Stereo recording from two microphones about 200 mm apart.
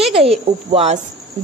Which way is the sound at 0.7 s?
35° right (ahead or behind).